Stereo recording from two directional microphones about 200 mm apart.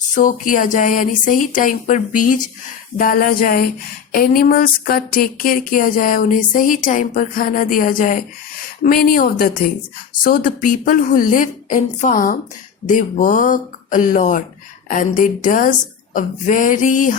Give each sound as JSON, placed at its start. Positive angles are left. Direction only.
{"t": 0.1, "sound": "speech", "side_deg": 40}